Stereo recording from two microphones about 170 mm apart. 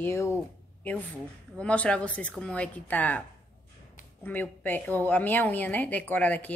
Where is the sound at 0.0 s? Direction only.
15° left (ahead or behind).